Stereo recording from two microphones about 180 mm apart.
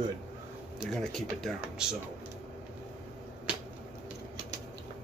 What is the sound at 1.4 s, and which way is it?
Speech, 5° right (ahead or behind).